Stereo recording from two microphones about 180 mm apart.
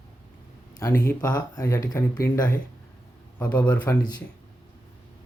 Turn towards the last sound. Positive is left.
turn(degrees=10)  # may be behind; listen again after turning